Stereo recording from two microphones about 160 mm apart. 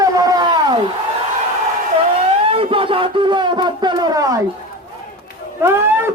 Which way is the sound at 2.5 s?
35° right (ahead or behind).